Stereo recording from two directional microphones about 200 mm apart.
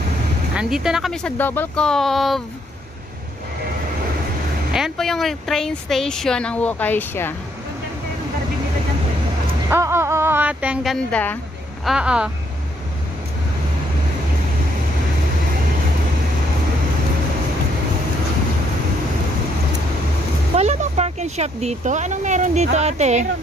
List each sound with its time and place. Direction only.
0.6 s speech: centre (ahead or behind)
4.7 s speech: centre (ahead or behind)
9.7 s a woman's voice: 15° right (ahead or behind)
20.5 s speech: 35° right (ahead or behind)